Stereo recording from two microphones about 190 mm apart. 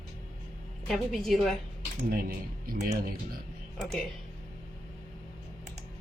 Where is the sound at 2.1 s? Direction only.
50° right (ahead or behind).